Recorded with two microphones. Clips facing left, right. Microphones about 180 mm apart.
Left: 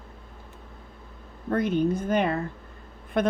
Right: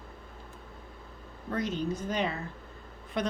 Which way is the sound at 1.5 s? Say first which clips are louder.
Left 8 dB; 55° left (ahead or behind).